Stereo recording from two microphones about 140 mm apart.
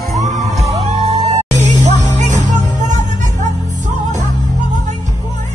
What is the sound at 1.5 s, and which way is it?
Music, 60° right (ahead or behind).